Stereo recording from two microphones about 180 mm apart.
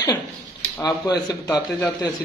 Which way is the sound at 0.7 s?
20° left (ahead or behind).